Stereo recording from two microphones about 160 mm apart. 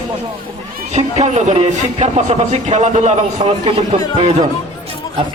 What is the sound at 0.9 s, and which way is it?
Speech, 45° right (ahead or behind).